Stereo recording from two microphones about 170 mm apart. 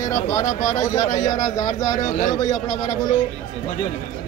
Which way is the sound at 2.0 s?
50° left (ahead or behind).